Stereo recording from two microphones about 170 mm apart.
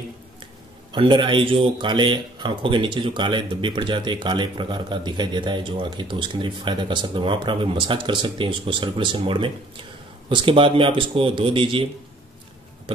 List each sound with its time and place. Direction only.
0.9 s speech: 30° right (ahead or behind)